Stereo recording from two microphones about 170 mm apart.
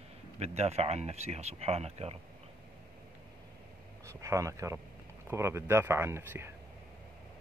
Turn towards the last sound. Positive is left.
turn(degrees=-15)  # may be behind; listen again after turning